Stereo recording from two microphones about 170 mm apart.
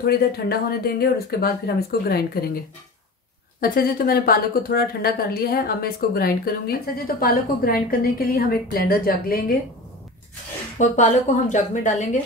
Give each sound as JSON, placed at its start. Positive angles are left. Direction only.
{"t": 0.0, "sound": "a woman's voice", "side_deg": 65}
{"t": 3.6, "sound": "a woman's voice", "side_deg": 60}
{"t": 10.8, "sound": "speech", "side_deg": 45}